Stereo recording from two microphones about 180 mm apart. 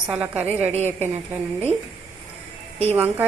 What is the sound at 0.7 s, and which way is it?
Speech, 35° right (ahead or behind).